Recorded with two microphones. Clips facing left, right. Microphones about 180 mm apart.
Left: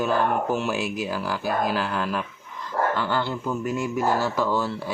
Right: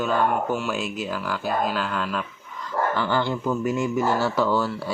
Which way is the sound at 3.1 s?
10° right (ahead or behind).